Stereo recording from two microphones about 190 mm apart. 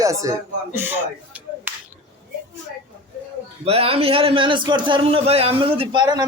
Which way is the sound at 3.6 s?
30° right (ahead or behind).